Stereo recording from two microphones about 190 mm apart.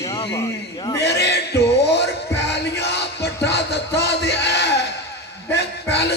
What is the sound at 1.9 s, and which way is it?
Music, 60° left (ahead or behind).